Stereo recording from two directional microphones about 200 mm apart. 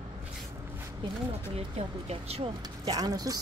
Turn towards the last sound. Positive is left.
turn(degrees=-20)  # may be behind; listen again after turning